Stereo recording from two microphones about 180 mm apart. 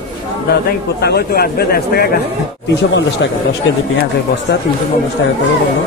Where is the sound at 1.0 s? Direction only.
60° left (ahead or behind).